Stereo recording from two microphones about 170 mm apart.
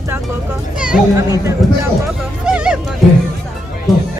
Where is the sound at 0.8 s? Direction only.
5° right (ahead or behind).